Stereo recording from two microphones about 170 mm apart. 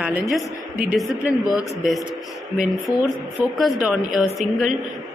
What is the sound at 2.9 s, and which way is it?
Speech, 25° left (ahead or behind).